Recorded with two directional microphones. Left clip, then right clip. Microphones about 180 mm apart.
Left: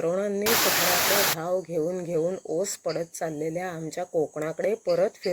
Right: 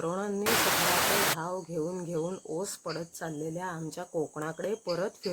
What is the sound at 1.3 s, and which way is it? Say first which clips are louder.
Speech: left 7 dB; 20° left (ahead or behind).